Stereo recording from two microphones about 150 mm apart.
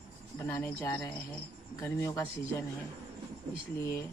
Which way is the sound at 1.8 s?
20° left (ahead or behind).